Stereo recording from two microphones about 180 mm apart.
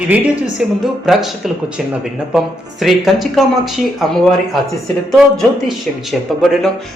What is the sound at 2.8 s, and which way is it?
Speech, centre (ahead or behind).